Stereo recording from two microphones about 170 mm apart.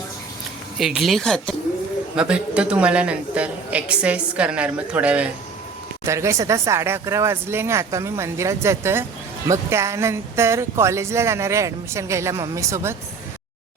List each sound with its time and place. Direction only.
0.8 s speech: centre (ahead or behind)